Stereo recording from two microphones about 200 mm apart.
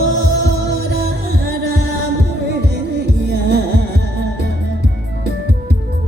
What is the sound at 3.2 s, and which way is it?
Music, 55° right (ahead or behind).